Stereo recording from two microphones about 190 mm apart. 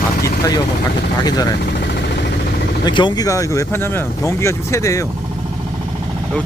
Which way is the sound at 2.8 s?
25° left (ahead or behind).